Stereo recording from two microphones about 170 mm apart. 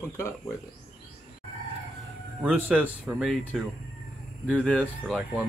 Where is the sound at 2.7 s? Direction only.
5° right (ahead or behind); by 4.9 s 10° left (ahead or behind).